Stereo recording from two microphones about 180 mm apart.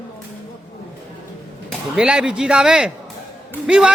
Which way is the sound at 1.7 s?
5° right (ahead or behind).